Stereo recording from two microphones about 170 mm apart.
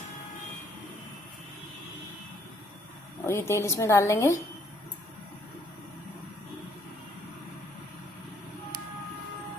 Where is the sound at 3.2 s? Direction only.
15° left (ahead or behind).